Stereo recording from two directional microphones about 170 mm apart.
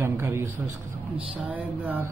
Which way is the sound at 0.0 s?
15° right (ahead or behind).